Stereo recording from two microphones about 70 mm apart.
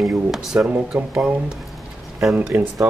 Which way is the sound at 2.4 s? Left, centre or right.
Right.